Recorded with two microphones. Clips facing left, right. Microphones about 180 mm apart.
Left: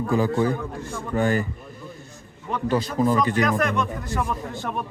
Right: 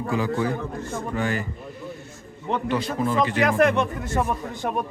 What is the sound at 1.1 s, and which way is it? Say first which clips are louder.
Speech: left 5 dB; 45° left (ahead or behind).